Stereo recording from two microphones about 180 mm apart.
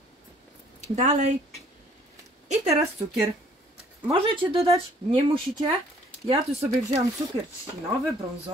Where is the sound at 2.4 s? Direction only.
35° right (ahead or behind).